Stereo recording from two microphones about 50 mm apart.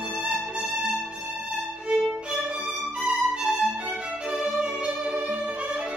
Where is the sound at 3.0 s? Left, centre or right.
Centre.